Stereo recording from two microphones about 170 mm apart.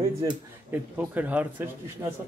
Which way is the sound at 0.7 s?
10° right (ahead or behind).